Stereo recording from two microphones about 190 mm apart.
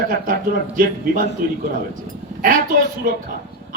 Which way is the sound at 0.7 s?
45° right (ahead or behind).